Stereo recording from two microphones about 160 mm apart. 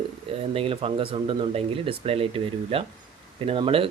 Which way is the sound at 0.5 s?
35° right (ahead or behind).